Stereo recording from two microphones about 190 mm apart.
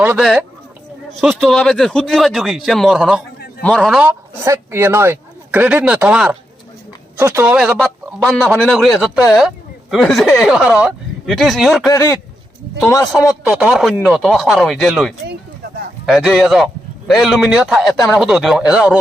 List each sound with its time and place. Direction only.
0.0 s a man's voice: 5° right (ahead or behind)
11.9 s speech: 20° left (ahead or behind)
13.5 s a man's voice: centre (ahead or behind)